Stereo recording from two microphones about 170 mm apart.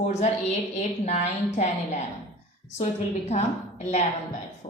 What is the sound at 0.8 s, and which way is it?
Speech, 40° left (ahead or behind).